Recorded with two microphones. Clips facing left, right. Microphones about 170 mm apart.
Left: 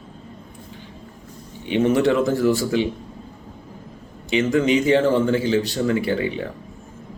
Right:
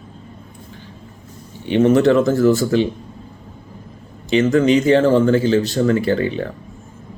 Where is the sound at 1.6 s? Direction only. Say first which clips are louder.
Right 5 dB; 15° left (ahead or behind).